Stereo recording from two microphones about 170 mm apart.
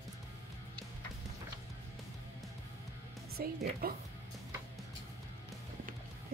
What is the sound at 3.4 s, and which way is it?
Speech, 65° right (ahead or behind).